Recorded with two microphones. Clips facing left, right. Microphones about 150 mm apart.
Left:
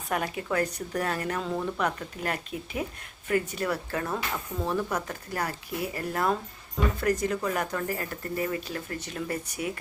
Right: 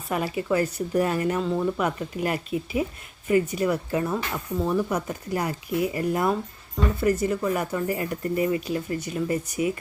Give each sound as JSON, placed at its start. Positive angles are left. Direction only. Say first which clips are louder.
{"t": 0.1, "sound": "speech", "louder": "right 4 dB", "side_deg": 0}